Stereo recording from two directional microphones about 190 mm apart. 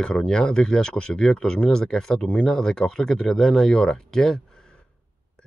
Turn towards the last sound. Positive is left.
turn(degrees=5)  # may be behind; listen again after turning